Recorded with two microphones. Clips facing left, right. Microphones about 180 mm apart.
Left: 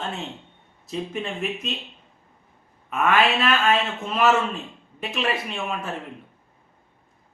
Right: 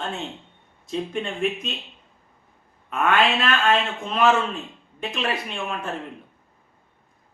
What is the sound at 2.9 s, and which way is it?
A man's voice, 5° left (ahead or behind).